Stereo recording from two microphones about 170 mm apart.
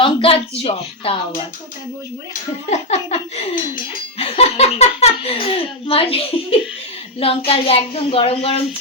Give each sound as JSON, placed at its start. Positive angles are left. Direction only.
{"t": 0.0, "sound": "a sound", "side_deg": 30}
{"t": 0.6, "sound": "speech", "side_deg": 35}
{"t": 2.6, "sound": "speech", "side_deg": 40}